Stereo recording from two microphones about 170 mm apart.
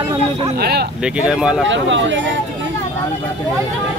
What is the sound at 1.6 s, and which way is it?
Speech, 90° right.